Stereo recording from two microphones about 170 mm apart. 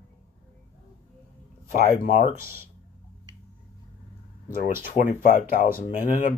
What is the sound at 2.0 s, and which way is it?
Speech, 35° left (ahead or behind).